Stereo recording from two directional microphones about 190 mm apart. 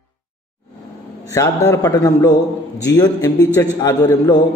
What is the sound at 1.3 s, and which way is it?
A man's voice, 15° left (ahead or behind).